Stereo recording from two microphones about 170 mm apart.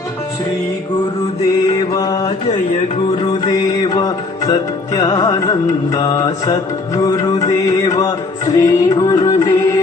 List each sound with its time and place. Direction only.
1.9 s mantra: 20° left (ahead or behind)
3.4 s music: 25° left (ahead or behind)